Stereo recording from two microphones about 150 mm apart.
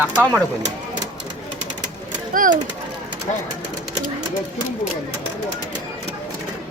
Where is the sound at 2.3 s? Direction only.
60° right (ahead or behind).